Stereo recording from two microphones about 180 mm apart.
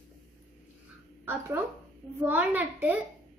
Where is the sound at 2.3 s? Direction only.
10° right (ahead or behind).